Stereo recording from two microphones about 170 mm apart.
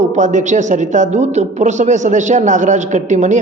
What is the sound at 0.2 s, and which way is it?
A woman's voice, 45° right (ahead or behind).